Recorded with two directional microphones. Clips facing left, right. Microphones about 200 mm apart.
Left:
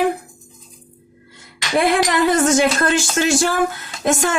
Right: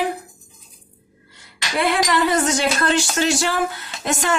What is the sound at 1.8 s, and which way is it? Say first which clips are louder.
Speech: left 2 dB; 50° left (ahead or behind).